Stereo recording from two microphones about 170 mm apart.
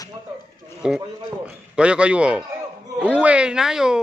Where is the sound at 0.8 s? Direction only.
5° right (ahead or behind).